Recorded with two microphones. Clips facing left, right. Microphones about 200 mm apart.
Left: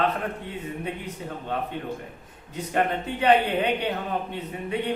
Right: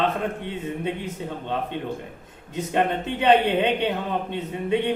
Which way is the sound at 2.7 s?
25° right (ahead or behind).